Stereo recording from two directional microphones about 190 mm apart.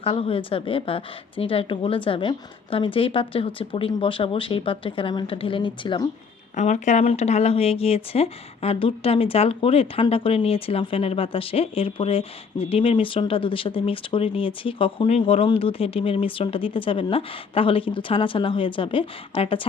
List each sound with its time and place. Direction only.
0.0 s speech: 30° left (ahead or behind)
6.6 s speech: 40° left (ahead or behind)